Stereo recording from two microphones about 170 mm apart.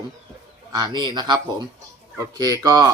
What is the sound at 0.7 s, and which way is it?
Speech, 25° right (ahead or behind).